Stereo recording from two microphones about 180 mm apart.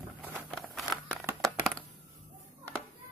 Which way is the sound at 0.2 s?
10° right (ahead or behind).